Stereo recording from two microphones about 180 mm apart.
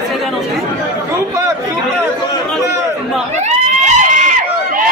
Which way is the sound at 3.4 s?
40° right (ahead or behind).